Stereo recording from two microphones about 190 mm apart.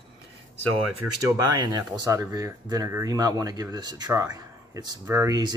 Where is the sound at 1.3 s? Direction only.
20° right (ahead or behind).